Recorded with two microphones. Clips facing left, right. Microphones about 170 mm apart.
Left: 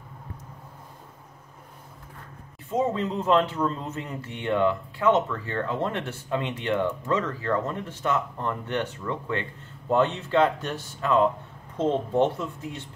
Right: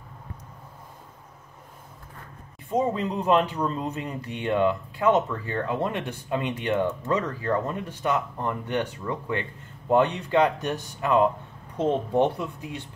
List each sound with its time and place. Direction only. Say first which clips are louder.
2.7 s speech: even; 10° right (ahead or behind)